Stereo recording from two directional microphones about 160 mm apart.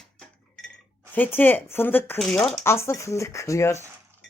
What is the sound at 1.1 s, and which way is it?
Speech, 10° left (ahead or behind).